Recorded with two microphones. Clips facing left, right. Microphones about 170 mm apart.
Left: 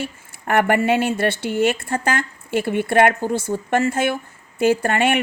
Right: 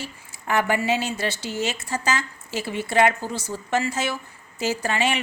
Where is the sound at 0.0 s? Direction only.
55° left (ahead or behind).